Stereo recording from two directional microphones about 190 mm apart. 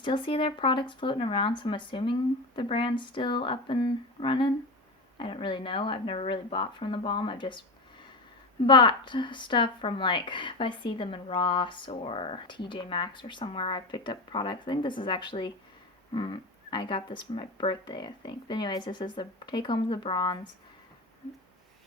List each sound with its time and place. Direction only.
0.0 s a woman's voice: 25° left (ahead or behind)
8.6 s a woman's voice: 25° left (ahead or behind)